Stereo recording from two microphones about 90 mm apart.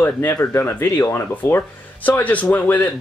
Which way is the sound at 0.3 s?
35° left (ahead or behind).